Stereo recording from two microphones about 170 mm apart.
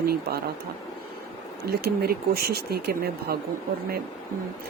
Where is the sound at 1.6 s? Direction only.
70° right (ahead or behind).